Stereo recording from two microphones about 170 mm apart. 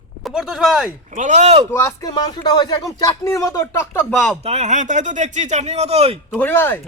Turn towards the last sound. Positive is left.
turn(degrees=10)  # may be behind; listen again after turning